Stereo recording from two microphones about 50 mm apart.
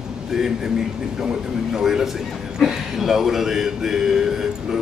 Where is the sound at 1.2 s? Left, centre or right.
Centre.